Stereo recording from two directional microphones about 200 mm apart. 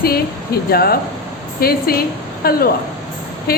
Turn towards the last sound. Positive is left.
turn(degrees=50)  # may be behind; listen again after turning